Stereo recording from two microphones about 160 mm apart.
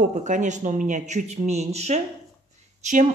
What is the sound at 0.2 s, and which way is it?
A woman's voice, 50° right (ahead or behind).